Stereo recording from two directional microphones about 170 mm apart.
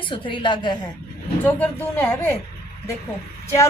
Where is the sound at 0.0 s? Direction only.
30° left (ahead or behind).